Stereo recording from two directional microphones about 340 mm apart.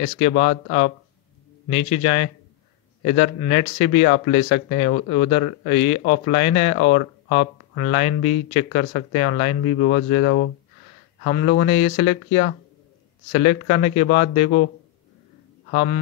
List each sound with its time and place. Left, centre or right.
0.0 s speech: centre